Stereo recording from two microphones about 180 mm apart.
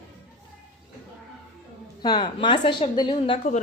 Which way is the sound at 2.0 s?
25° left (ahead or behind).